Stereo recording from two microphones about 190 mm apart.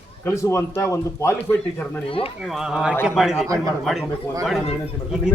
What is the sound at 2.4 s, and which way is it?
Speech, 5° right (ahead or behind).